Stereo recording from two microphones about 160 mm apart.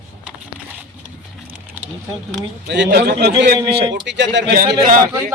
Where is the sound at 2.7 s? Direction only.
90° right.